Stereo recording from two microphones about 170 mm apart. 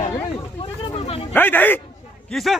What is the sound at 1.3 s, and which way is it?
Speech, 10° left (ahead or behind).